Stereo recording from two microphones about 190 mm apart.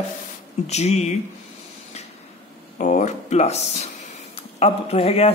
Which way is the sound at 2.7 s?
40° left (ahead or behind).